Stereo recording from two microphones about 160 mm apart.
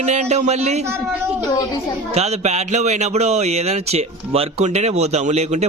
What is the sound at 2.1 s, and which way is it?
Speech, 40° right (ahead or behind).